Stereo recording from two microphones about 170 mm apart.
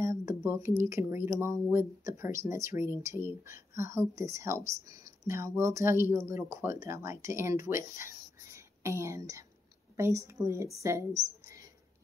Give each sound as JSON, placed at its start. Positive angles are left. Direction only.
{"t": 0.0, "sound": "speech", "side_deg": -15}
{"t": 11.4, "sound": "whispering", "side_deg": -20}